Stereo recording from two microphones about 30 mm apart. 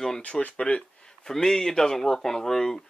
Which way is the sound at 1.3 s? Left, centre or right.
Centre.